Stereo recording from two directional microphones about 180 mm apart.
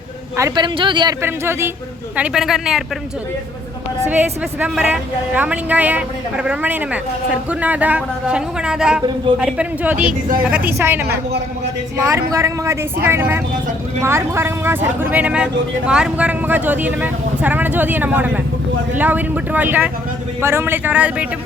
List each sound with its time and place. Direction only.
0.3 s speech: 20° right (ahead or behind)
1.2 s a woman's voice: 15° right (ahead or behind)
4.1 s a woman's voice: 10° right (ahead or behind)
12.0 s a woman's voice: 15° right (ahead or behind)